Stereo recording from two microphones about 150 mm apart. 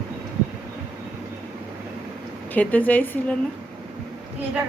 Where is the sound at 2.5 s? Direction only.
10° left (ahead or behind).